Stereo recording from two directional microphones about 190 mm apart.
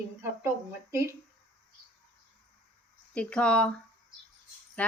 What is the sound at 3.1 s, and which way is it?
Speech, 5° left (ahead or behind).